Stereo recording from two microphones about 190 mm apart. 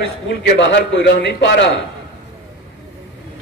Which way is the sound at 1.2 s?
65° left (ahead or behind).